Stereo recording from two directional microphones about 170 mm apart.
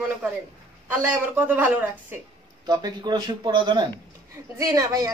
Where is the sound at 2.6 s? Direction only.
25° right (ahead or behind).